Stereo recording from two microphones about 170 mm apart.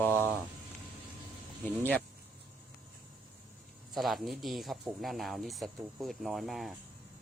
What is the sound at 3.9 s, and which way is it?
Speech, centre (ahead or behind).